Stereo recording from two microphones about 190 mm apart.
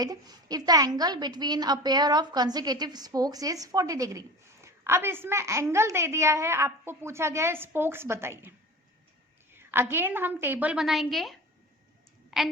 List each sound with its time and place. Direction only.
0.0 s a woman's voice: 20° right (ahead or behind); by 12.5 s centre (ahead or behind)